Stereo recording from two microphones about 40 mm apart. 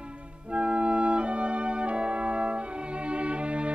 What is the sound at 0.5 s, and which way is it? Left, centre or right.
Organ, right.